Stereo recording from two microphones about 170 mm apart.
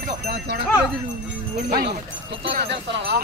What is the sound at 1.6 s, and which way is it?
Speech, 65° right (ahead or behind).